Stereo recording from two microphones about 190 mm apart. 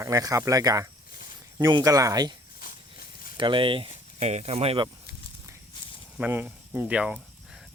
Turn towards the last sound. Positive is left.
turn(degrees=-5)  # may be behind; listen again after turning